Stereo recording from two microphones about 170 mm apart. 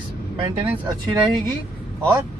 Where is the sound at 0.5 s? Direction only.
25° right (ahead or behind).